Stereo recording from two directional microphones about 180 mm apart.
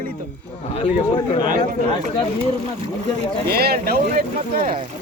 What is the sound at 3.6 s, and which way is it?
Speech, 60° right (ahead or behind).